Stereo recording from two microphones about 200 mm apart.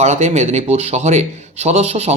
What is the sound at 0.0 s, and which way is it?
A man's voice, 35° right (ahead or behind).